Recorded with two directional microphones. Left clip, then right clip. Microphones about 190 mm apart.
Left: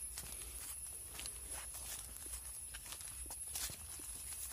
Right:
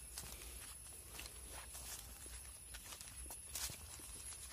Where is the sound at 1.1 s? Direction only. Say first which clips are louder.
Left 3 dB; 10° left (ahead or behind).